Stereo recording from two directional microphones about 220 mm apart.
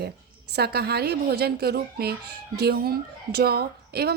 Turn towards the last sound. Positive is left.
turn(degrees=-45)  # may be behind; listen again after turning